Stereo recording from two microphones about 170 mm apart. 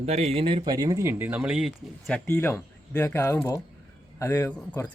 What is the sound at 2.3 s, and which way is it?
A man's voice, 15° left (ahead or behind).